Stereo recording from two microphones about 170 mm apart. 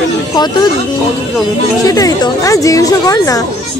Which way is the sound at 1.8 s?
20° left (ahead or behind).